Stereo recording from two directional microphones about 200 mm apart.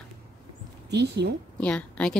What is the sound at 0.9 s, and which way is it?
Speech, 60° right (ahead or behind).